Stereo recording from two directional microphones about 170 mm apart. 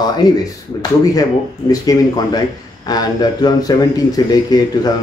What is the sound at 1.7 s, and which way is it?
Speech, 20° left (ahead or behind).